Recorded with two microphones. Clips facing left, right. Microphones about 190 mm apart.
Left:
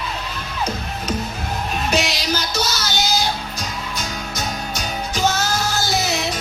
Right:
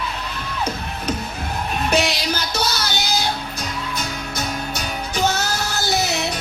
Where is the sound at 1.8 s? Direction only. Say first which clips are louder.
Right 3 dB; 55° right (ahead or behind).